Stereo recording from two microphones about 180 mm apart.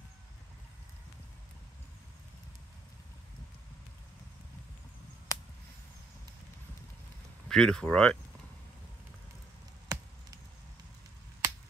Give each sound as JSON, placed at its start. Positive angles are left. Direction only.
{"t": 5.3, "sound": "a sound", "side_deg": 15}
{"t": 7.4, "sound": "speech", "side_deg": 5}
{"t": 9.9, "sound": "chop", "side_deg": -20}